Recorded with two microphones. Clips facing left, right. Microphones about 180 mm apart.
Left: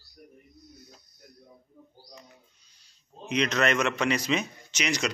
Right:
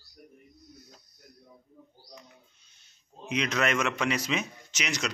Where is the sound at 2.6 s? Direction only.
25° right (ahead or behind).